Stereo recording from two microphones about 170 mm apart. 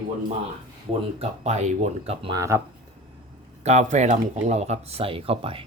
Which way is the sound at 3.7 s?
45° right (ahead or behind).